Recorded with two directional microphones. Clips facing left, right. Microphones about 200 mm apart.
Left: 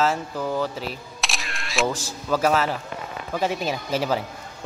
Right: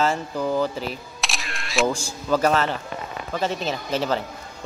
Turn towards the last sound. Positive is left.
turn(degrees=10)  # may be behind; listen again after turning